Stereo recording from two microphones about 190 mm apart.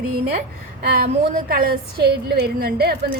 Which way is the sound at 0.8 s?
55° right (ahead or behind).